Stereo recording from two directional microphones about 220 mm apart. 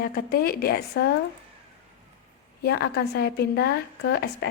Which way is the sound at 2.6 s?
50° left (ahead or behind).